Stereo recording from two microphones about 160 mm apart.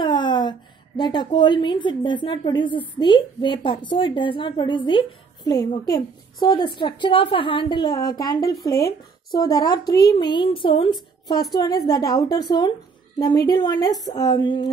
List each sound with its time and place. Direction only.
0.0 s a woman's voice: 30° left (ahead or behind)